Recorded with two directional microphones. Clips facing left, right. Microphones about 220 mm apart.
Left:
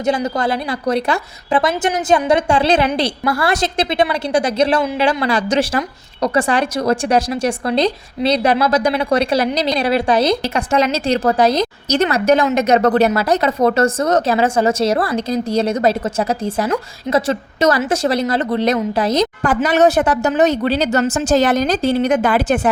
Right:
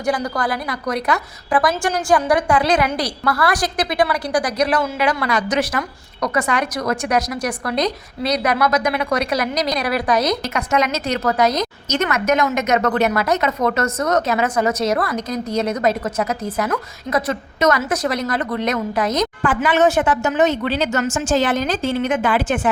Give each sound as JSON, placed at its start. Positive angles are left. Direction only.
{"t": 0.0, "sound": "speech", "side_deg": 25}